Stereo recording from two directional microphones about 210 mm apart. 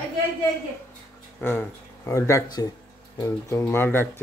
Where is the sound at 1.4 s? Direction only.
10° left (ahead or behind).